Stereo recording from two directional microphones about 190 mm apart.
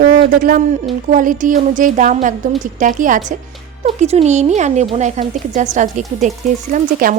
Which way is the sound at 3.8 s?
30° right (ahead or behind).